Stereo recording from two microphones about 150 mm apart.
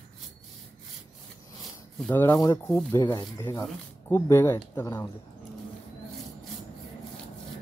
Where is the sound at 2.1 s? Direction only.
20° left (ahead or behind).